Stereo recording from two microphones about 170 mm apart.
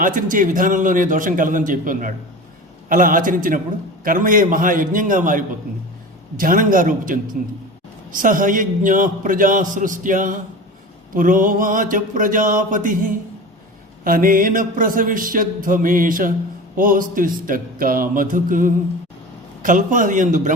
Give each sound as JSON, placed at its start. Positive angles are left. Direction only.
{"t": 0.0, "sound": "a man's voice", "side_deg": -50}